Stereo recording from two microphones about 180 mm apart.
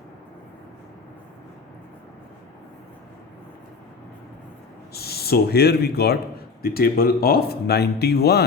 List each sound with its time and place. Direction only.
4.9 s speech: 60° left (ahead or behind)